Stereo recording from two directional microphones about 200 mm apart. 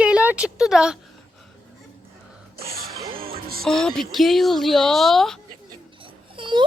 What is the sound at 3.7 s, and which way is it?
A woman's voice, centre (ahead or behind).